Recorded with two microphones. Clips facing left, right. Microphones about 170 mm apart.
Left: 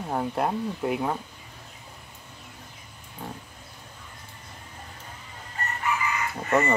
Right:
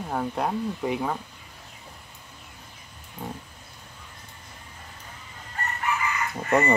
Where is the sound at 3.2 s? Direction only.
10° right (ahead or behind).